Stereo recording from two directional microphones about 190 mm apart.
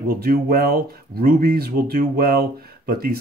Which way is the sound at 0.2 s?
55° right (ahead or behind).